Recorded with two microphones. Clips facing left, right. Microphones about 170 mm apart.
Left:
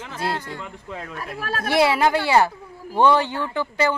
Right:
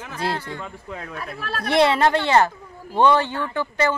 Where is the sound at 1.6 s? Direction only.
5° left (ahead or behind).